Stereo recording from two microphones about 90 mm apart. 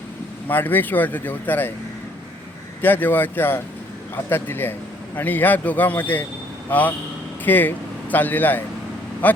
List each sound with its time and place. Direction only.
0.4 s speech: 20° left (ahead or behind)
2.8 s speech: 20° left (ahead or behind)